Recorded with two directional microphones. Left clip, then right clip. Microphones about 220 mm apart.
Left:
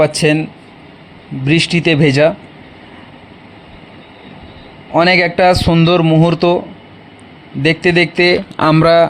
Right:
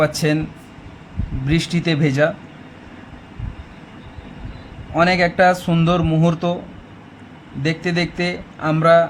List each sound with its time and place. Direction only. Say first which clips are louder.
0.0 s speech: left 6 dB; 15° left (ahead or behind)
1.5 s speech: left 8 dB; 15° left (ahead or behind)
4.9 s a man's voice: left 5 dB; 25° left (ahead or behind)
7.6 s a man's voice: left 10 dB; 20° left (ahead or behind)